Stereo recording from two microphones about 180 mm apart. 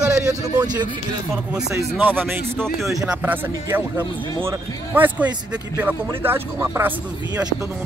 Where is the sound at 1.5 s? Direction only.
10° right (ahead or behind).